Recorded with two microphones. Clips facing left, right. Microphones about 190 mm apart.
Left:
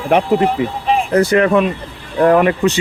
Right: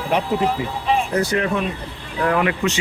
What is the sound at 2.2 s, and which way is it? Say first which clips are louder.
Speech: left 8 dB; 45° left (ahead or behind).